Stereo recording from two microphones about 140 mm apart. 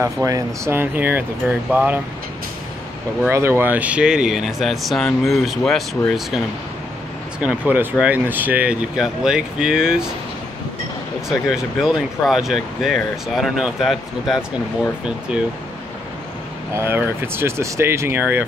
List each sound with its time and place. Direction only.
0.0 s speech: 20° right (ahead or behind)
3.3 s speech: 15° right (ahead or behind)
11.2 s speech: 5° right (ahead or behind)
16.7 s speech: 15° right (ahead or behind)